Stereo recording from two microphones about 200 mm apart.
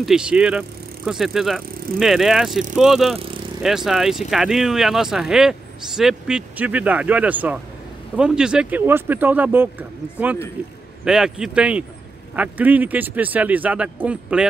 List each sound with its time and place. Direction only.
0.0 s speech: 5° right (ahead or behind)